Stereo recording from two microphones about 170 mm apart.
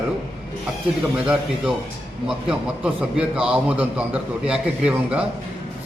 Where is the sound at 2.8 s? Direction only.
5° right (ahead or behind).